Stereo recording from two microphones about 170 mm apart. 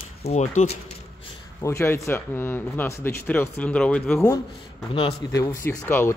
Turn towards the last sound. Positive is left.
turn(degrees=10)  # may be behind; listen again after turning